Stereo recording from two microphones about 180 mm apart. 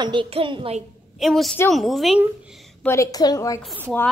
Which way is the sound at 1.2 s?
Centre (ahead or behind).